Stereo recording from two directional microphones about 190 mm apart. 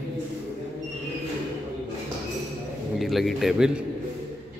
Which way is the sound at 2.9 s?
Centre (ahead or behind).